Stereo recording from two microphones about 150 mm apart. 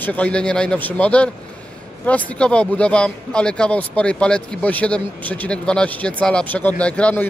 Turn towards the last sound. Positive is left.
turn(degrees=10)  # may be behind; listen again after turning